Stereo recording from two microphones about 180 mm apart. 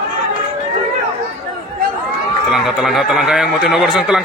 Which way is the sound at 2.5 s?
Centre (ahead or behind).